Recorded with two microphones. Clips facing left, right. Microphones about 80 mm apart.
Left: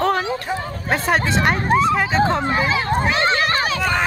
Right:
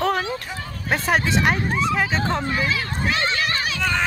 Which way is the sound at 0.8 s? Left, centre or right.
Centre.